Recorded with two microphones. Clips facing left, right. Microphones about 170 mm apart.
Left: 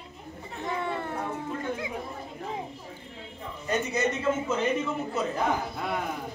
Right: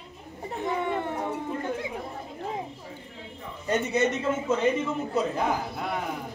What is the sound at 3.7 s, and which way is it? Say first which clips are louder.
Speech: right 3 dB; 30° right (ahead or behind).